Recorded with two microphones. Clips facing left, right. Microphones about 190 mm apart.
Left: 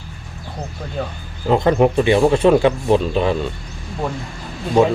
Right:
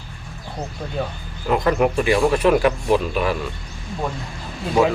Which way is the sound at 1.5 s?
25° left (ahead or behind).